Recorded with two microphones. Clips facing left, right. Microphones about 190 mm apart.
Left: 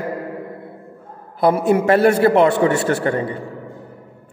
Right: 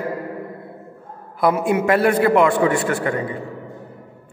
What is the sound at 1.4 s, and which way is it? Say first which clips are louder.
A man's voice: left 3 dB; 30° left (ahead or behind).